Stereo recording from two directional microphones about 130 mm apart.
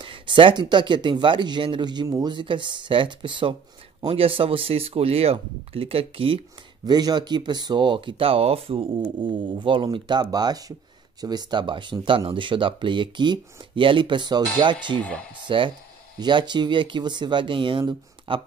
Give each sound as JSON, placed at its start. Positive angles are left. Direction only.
{"t": 0.0, "sound": "speech", "side_deg": -40}
{"t": 6.9, "sound": "speech", "side_deg": -30}